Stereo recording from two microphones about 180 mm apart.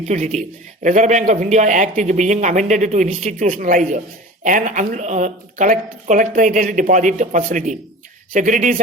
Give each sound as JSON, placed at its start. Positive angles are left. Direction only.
{"t": 0.1, "sound": "a man's voice", "side_deg": -40}